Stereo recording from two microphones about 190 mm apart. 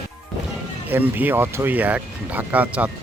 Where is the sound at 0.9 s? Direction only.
10° right (ahead or behind).